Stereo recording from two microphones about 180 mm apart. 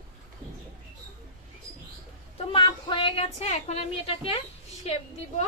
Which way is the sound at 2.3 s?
25° left (ahead or behind).